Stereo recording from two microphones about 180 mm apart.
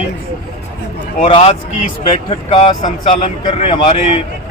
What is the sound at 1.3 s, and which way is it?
A man's voice, 40° left (ahead or behind).